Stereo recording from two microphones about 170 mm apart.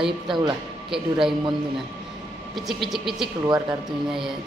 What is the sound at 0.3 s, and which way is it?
Speech, 25° right (ahead or behind).